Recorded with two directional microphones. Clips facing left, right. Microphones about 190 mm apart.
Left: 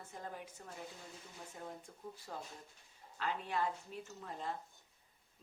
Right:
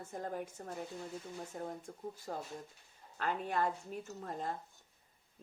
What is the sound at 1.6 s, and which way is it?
Speech, 45° right (ahead or behind).